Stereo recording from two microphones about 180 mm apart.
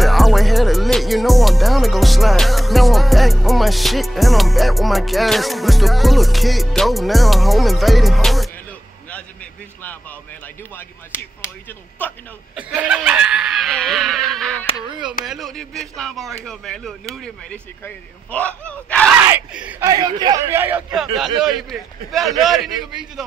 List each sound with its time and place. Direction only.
0.0 s music: centre (ahead or behind)
12.0 s speech: 10° left (ahead or behind)
12.5 s snicker: 10° right (ahead or behind)
15.2 s a man's voice: centre (ahead or behind)
19.2 s a man's voice: 10° right (ahead or behind)
19.9 s a man's voice: 20° right (ahead or behind); by 23.2 s centre (ahead or behind)